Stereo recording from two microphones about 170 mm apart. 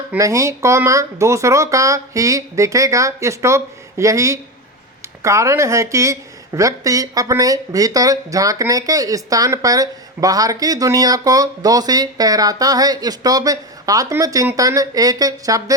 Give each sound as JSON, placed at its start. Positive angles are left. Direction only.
{"t": 0.1, "sound": "a woman's voice", "side_deg": -20}